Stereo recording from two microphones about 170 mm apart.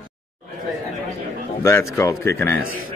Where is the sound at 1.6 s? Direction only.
15° left (ahead or behind).